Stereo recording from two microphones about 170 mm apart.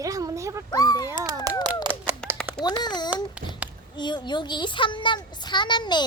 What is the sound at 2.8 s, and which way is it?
A child's voice, 25° left (ahead or behind).